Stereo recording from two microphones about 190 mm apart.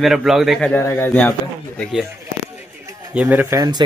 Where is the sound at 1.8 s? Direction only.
Centre (ahead or behind).